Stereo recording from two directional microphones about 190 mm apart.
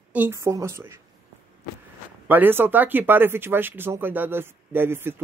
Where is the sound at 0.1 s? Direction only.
10° right (ahead or behind).